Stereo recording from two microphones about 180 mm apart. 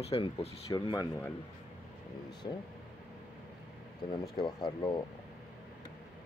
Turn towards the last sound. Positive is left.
turn(degrees=25)  # may be behind; listen again after turning